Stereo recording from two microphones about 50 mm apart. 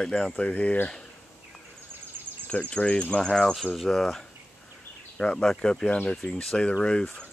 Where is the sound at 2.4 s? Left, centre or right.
Left.